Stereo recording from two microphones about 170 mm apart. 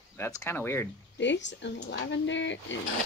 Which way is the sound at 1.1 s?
90° left.